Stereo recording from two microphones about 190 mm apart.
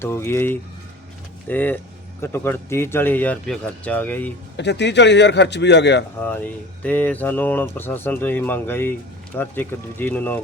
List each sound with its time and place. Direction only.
0.0 s speech: 10° left (ahead or behind)
4.5 s a man's voice: 65° left (ahead or behind)
6.2 s speech: 10° left (ahead or behind)